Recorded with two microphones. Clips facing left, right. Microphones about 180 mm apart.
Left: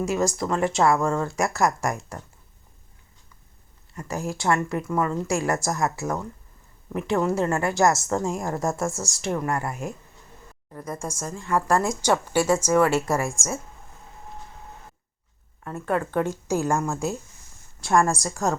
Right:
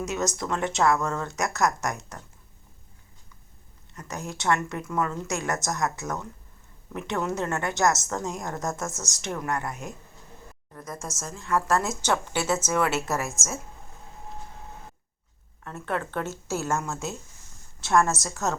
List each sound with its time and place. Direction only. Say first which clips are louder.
0.0 s a woman's voice: left 5 dB; centre (ahead or behind)
3.9 s a woman's voice: left 6 dB; centre (ahead or behind)
8.8 s speech: left 6 dB; 30° left (ahead or behind)
9.1 s a woman's voice: left 2 dB; centre (ahead or behind)
11.1 s a woman's voice: left 1 dB; centre (ahead or behind)
12.0 s speech: left 5 dB; 10° left (ahead or behind)
12.9 s a woman's voice: left 5 dB; 5° right (ahead or behind)
15.6 s a woman's voice: left 5 dB; 5° left (ahead or behind)
18.0 s a woman's voice: left 3 dB; centre (ahead or behind)